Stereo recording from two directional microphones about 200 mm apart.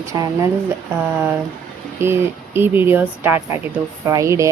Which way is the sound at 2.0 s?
10° right (ahead or behind).